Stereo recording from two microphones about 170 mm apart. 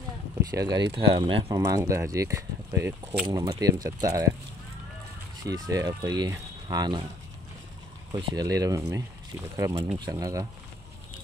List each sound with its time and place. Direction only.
0.4 s speech: 20° right (ahead or behind)
1.7 s speech: 15° right (ahead or behind)
5.7 s speech: 20° right (ahead or behind)
8.1 s speech: 25° right (ahead or behind)